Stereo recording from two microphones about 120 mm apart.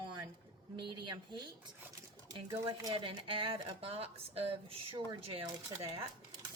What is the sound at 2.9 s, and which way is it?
Speech, 45° right (ahead or behind).